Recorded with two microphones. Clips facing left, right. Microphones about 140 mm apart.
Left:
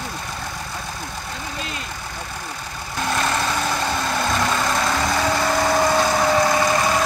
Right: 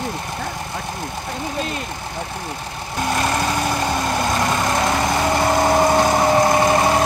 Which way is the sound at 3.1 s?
15° right (ahead or behind).